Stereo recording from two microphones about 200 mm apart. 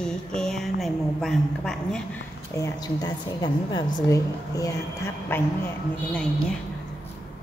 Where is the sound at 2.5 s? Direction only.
20° left (ahead or behind).